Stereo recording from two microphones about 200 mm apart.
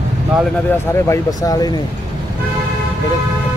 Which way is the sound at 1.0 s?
15° left (ahead or behind).